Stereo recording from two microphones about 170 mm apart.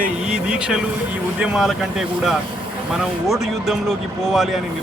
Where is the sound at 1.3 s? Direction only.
5° right (ahead or behind).